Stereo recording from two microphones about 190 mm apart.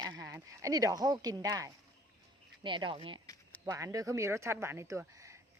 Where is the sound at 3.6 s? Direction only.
15° right (ahead or behind).